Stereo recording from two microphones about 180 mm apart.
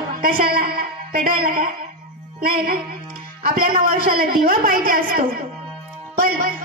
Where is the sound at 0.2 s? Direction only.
55° right (ahead or behind).